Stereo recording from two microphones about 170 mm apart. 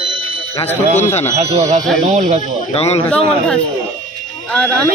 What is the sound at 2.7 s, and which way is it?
Speech, 40° left (ahead or behind).